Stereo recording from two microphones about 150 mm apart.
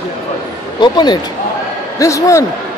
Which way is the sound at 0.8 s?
30° left (ahead or behind).